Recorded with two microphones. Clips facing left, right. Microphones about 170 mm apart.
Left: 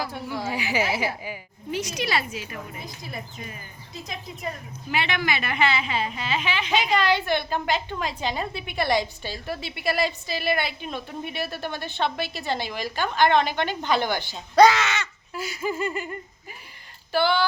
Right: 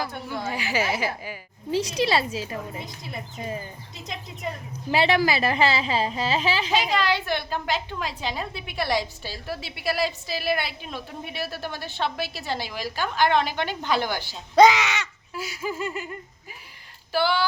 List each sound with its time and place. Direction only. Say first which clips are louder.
0.0 s speech: even; 5° left (ahead or behind)
1.7 s a woman's voice: right 4 dB; 30° right (ahead or behind)
4.9 s a woman's voice: right 5 dB; 35° right (ahead or behind)
6.7 s a woman's voice: left 5 dB; centre (ahead or behind)
14.5 s a woman's voice: even; 20° right (ahead or behind); by 16.0 s centre (ahead or behind)
17.1 s speech: left 1 dB; 5° right (ahead or behind)